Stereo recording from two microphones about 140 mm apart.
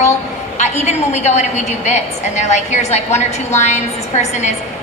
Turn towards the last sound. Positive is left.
turn(degrees=55)  # may be behind; listen again after turning